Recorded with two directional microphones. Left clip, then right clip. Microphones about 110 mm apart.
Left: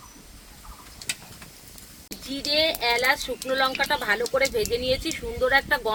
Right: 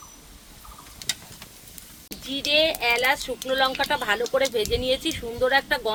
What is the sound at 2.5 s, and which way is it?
Speech, 30° right (ahead or behind).